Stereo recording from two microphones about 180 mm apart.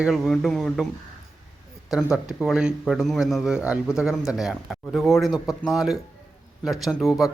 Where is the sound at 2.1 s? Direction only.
5° right (ahead or behind).